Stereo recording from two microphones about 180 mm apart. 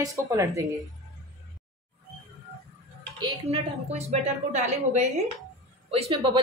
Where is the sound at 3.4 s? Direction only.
35° right (ahead or behind).